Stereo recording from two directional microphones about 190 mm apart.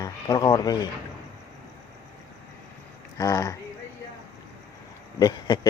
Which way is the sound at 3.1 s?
15° left (ahead or behind).